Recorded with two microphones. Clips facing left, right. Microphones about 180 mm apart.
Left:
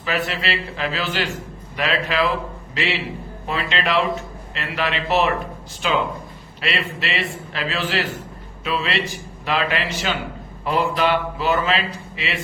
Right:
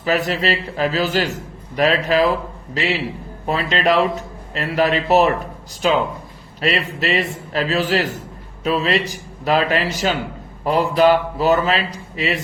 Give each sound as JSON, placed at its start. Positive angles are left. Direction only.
{"t": 0.0, "sound": "a man's voice", "side_deg": -40}